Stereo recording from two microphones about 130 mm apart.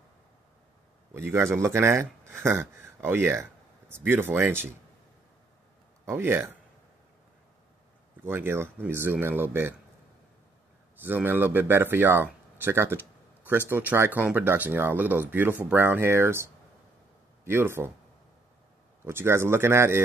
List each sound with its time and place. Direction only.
1.1 s speech: 20° right (ahead or behind)
6.0 s speech: 15° right (ahead or behind)
8.2 s speech: 15° right (ahead or behind)
11.0 s speech: 15° right (ahead or behind)
17.5 s speech: 20° right (ahead or behind)
19.0 s speech: 20° right (ahead or behind)